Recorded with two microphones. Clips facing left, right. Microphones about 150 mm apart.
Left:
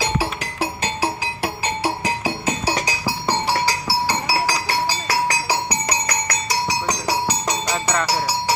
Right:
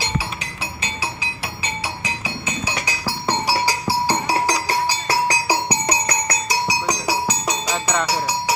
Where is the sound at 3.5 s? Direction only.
20° right (ahead or behind).